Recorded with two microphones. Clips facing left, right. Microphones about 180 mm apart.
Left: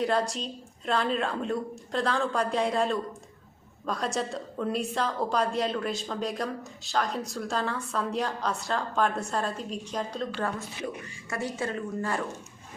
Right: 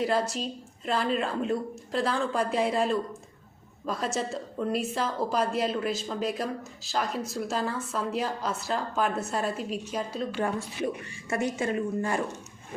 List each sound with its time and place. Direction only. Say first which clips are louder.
0.0 s a woman's voice: even; centre (ahead or behind)
11.3 s a woman's voice: right 4 dB; 20° right (ahead or behind)